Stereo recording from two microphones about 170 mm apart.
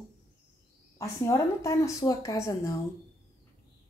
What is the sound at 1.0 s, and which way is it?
A woman's voice, 20° left (ahead or behind).